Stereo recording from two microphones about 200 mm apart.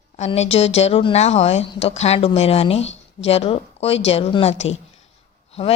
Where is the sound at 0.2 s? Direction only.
30° left (ahead or behind).